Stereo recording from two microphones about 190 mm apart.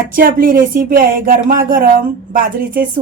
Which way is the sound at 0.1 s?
50° right (ahead or behind).